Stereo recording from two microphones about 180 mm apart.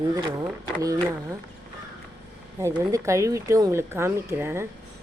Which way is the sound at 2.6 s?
15° right (ahead or behind).